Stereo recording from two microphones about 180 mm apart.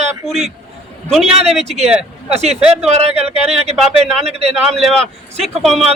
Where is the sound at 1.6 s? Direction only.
35° right (ahead or behind).